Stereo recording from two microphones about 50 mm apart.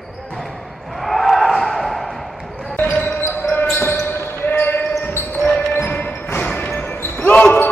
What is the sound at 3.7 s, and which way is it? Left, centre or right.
Basketball bounce, left.